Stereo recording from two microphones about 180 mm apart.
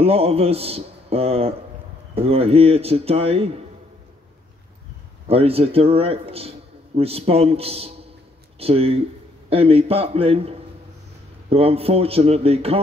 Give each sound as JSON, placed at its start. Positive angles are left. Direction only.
{"t": 0.0, "sound": "speech", "side_deg": -35}
{"t": 5.3, "sound": "speech", "side_deg": -35}